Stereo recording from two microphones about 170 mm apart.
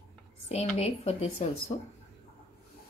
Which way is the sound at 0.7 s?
35° left (ahead or behind).